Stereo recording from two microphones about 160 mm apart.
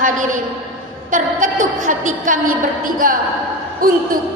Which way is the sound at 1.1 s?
55° right (ahead or behind).